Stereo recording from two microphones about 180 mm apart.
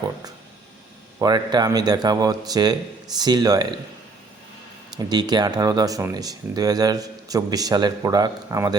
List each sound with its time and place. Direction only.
1.2 s speech: 25° right (ahead or behind)
4.9 s speech: 20° right (ahead or behind)